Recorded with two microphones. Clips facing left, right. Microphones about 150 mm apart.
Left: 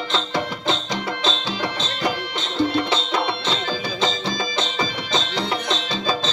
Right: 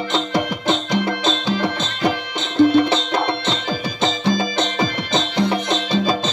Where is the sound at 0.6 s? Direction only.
55° right (ahead or behind).